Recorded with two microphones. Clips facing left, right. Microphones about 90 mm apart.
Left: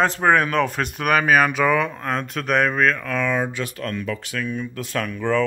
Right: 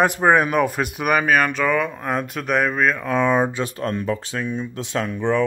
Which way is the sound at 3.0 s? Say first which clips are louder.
Right 4 dB; 20° right (ahead or behind).